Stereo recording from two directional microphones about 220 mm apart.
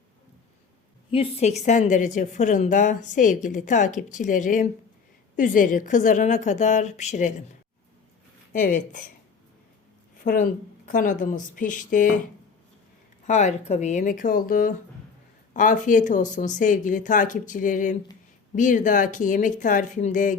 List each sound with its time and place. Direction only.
1.1 s a woman's voice: 25° left (ahead or behind)
8.5 s a woman's voice: 35° left (ahead or behind)
10.8 s a woman's voice: 40° left (ahead or behind)
13.2 s a woman's voice: 30° left (ahead or behind)